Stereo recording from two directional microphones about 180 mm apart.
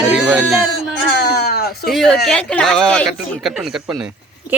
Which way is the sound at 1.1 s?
65° left (ahead or behind).